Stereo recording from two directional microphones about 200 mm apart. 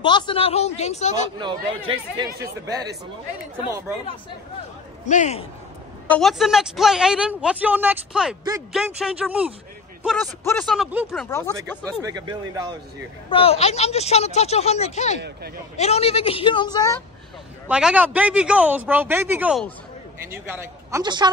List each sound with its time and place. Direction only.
0.0 s a woman's voice: 25° left (ahead or behind)
1.4 s speech: 20° right (ahead or behind)
5.0 s a woman's voice: 35° left (ahead or behind)
6.0 s speech: 5° left (ahead or behind)
10.4 s speech: 5° left (ahead or behind)
11.1 s speech: 10° left (ahead or behind)
12.0 s speech: 20° right (ahead or behind)
13.3 s a woman's voice: 30° left (ahead or behind)
15.2 s speech: 50° right (ahead or behind)
15.7 s a woman's voice: 30° left (ahead or behind)
17.6 s speech: 5° right (ahead or behind); by 21.3 s 20° right (ahead or behind)